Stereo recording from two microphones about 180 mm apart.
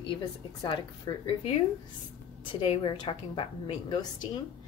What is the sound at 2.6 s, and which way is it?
A woman's voice, 30° left (ahead or behind).